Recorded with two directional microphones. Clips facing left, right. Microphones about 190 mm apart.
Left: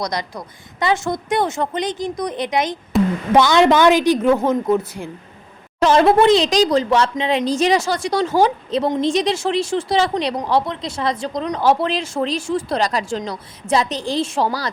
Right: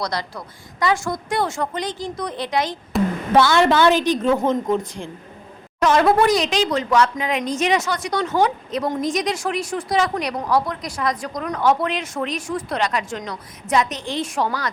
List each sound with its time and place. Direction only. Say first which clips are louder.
0.0 s a woman's voice: left 2 dB; 20° left (ahead or behind)
2.9 s a sound: left 3 dB; centre (ahead or behind)
3.3 s a woman's voice: left 2 dB; 20° left (ahead or behind)
5.8 s a woman's voice: left 3 dB; 30° left (ahead or behind)
6.5 s a woman's voice: left 4 dB; 35° left (ahead or behind)